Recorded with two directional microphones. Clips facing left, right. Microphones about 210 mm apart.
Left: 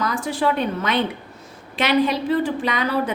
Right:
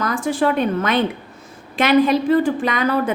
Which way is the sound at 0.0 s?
50° right (ahead or behind).